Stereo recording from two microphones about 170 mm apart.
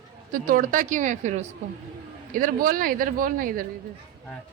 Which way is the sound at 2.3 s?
55° right (ahead or behind).